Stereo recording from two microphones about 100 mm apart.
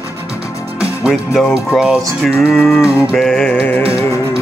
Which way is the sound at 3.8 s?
30° left (ahead or behind).